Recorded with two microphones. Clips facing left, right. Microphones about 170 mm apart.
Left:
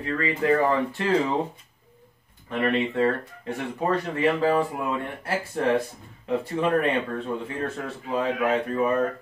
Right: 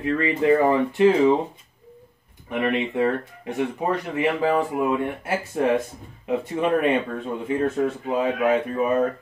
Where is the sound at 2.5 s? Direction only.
15° right (ahead or behind).